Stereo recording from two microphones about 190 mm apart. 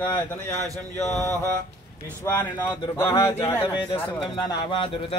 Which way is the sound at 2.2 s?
20° left (ahead or behind).